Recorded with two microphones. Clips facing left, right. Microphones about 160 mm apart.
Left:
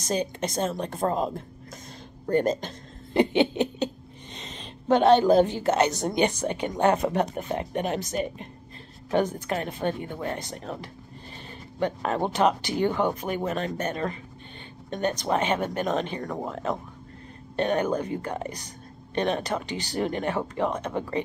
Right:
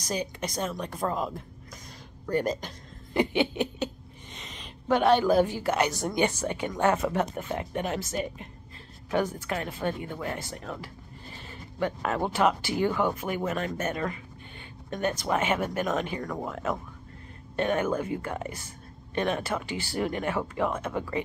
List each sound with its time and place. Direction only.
0.0 s speech: 25° left (ahead or behind)
2.3 s a sound: 25° left (ahead or behind)
4.4 s speech: 25° left (ahead or behind)
18.0 s speech: 35° left (ahead or behind)
18.3 s speech: 20° left (ahead or behind)